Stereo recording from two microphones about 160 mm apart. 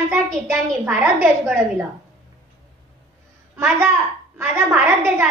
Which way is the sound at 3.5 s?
10° right (ahead or behind).